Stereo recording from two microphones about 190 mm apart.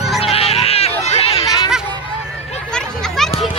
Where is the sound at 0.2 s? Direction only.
30° left (ahead or behind).